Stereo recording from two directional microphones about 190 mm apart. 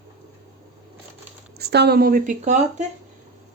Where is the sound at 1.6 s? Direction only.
60° right (ahead or behind); by 2.9 s 40° right (ahead or behind).